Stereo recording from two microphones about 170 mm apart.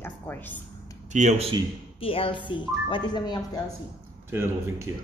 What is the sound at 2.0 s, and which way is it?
A woman's voice, 35° left (ahead or behind).